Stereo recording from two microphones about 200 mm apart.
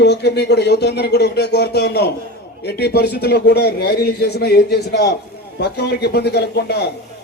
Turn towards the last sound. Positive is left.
turn(degrees=55)  # may be behind; listen again after turning